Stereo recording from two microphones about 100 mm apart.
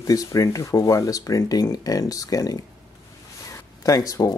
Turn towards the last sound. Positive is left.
turn(degrees=35)  # may be behind; listen again after turning